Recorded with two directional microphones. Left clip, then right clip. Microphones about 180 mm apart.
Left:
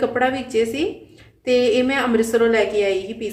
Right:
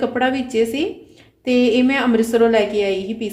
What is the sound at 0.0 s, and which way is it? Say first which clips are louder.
A woman's voice: even; 25° right (ahead or behind).